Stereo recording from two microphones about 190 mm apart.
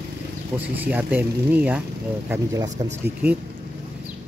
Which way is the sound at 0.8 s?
10° right (ahead or behind).